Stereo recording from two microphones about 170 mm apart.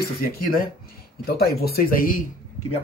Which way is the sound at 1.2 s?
65° left (ahead or behind).